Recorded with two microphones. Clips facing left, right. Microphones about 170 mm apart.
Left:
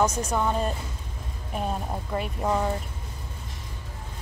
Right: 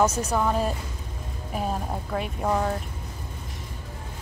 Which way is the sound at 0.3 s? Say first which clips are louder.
Right 1 dB; centre (ahead or behind).